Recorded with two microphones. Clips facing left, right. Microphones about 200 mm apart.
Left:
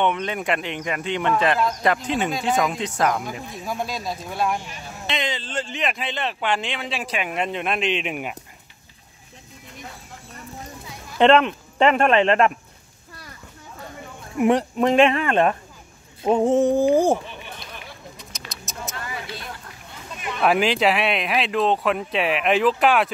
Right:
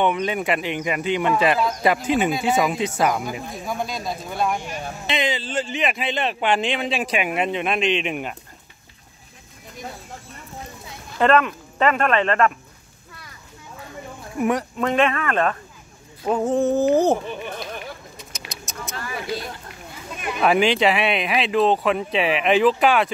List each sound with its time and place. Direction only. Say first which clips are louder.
0.0 s speech: right 2 dB; 5° right (ahead or behind)
11.1 s speech: left 2 dB; 25° left (ahead or behind)
14.4 s speech: left 3 dB; 25° left (ahead or behind)
16.3 s a sound: left 2 dB; 25° left (ahead or behind)
17.3 s a sound: right 8 dB; 50° right (ahead or behind)
18.1 s vehicle: right 1 dB; centre (ahead or behind)
20.3 s speech: right 1 dB; centre (ahead or behind)